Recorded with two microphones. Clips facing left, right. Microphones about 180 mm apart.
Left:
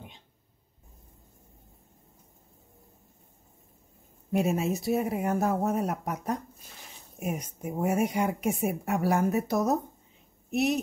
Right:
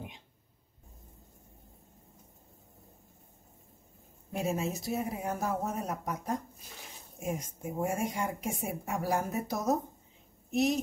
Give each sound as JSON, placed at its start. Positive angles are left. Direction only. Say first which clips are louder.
{"t": 4.3, "sound": "speech", "louder": "left 6 dB", "side_deg": 65}